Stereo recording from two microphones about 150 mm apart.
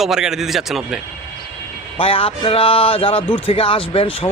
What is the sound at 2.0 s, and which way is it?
Speech, 40° left (ahead or behind).